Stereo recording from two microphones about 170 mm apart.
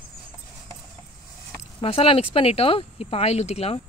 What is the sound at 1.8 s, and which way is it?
Speech, 35° left (ahead or behind).